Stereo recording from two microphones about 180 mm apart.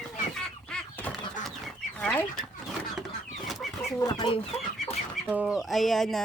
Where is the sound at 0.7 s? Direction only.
10° left (ahead or behind).